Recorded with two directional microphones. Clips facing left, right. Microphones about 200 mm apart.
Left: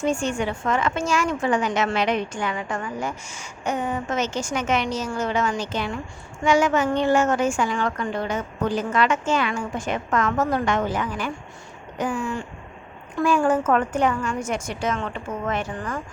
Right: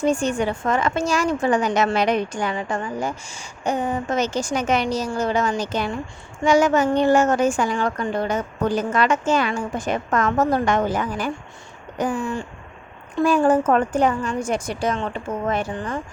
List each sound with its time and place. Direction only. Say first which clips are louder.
0.0 s a woman's voice: right 3 dB; 40° right (ahead or behind)